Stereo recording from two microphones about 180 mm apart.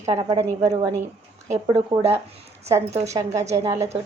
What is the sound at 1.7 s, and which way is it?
A woman's voice, 35° right (ahead or behind).